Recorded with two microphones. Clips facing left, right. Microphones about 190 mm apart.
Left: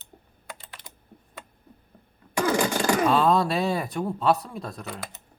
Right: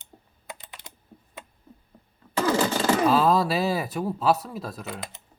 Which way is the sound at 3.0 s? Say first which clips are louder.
Even; 5° right (ahead or behind).